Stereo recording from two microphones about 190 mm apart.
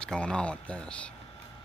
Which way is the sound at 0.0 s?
5° left (ahead or behind).